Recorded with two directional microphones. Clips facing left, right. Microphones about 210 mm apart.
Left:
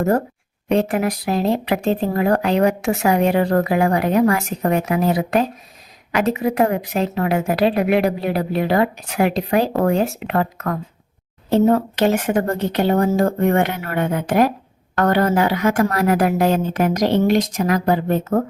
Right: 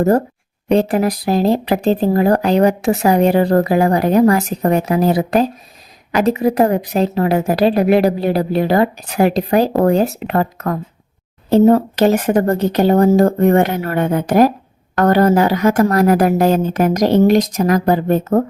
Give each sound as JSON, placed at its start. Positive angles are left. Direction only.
{"t": 0.7, "sound": "speech", "side_deg": -35}